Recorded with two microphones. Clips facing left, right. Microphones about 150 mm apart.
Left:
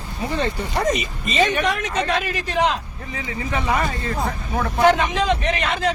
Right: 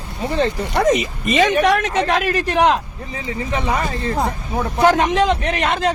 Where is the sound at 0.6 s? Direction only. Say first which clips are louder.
Right 5 dB; 75° right (ahead or behind).